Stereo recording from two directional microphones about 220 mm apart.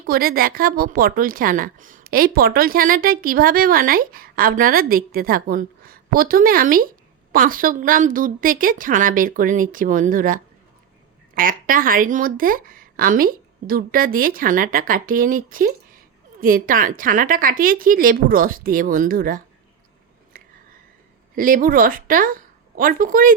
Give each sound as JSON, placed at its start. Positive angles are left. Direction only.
{"t": 0.1, "sound": "a woman's voice", "side_deg": -40}
{"t": 21.3, "sound": "a woman's voice", "side_deg": -40}